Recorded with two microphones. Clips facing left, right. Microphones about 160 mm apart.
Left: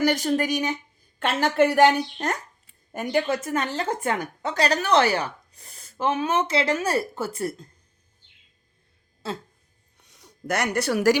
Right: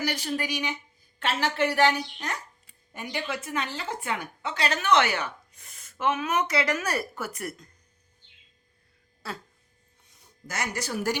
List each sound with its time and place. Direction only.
0.0 s a woman's voice: 50° left (ahead or behind); by 7.7 s 30° left (ahead or behind)
9.2 s speech: 25° left (ahead or behind)
10.0 s speech: 80° left